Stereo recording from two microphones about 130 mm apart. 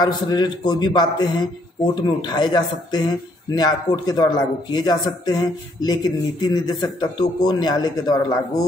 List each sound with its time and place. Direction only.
0.0 s speech: 35° left (ahead or behind)